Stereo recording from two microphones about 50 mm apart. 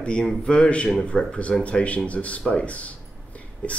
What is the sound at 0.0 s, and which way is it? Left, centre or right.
A man's voice, left.